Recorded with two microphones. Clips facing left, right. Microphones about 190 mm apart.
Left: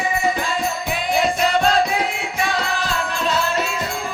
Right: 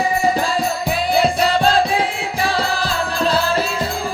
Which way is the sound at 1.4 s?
30° right (ahead or behind).